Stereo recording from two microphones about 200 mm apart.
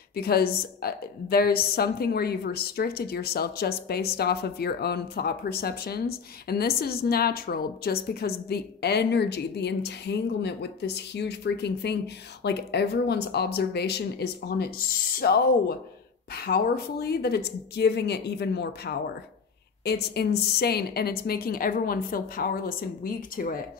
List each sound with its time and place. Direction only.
0.1 s a woman's voice: 50° left (ahead or behind)